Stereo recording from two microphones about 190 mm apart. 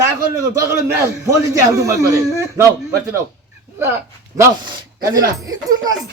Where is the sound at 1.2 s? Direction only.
15° right (ahead or behind).